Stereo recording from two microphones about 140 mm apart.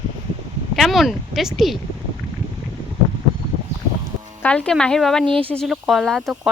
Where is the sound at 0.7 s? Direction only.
Centre (ahead or behind).